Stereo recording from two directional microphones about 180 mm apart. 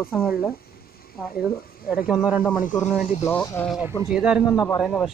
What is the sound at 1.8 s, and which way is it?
Speech, 5° right (ahead or behind).